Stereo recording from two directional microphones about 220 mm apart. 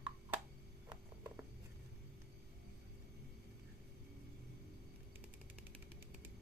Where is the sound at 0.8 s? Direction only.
15° right (ahead or behind).